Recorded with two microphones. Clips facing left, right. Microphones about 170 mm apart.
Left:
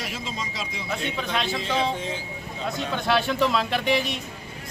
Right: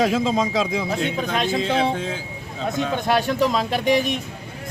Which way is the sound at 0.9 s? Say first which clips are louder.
Right 5 dB; 45° right (ahead or behind).